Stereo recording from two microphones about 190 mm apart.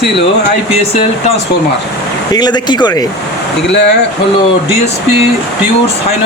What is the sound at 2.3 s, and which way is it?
Speech, 20° left (ahead or behind).